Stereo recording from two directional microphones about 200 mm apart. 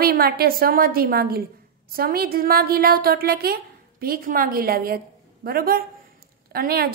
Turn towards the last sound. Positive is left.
turn(degrees=-50)  # may be behind; listen again after turning